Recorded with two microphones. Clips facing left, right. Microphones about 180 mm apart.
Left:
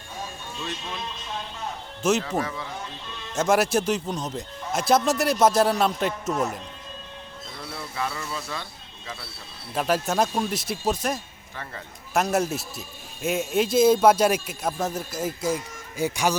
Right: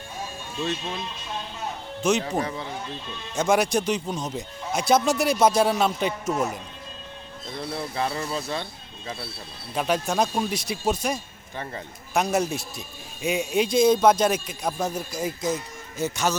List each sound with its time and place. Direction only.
2.0 s speech: 5° left (ahead or behind)
2.4 s speech: 25° right (ahead or behind)
3.3 s speech: 5° left (ahead or behind)
7.5 s speech: 30° right (ahead or behind)
9.7 s speech: centre (ahead or behind)
11.5 s speech: 20° right (ahead or behind)
12.1 s a man's voice: centre (ahead or behind)